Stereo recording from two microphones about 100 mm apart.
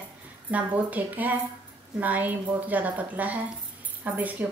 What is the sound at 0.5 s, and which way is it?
A woman's voice, 15° right (ahead or behind).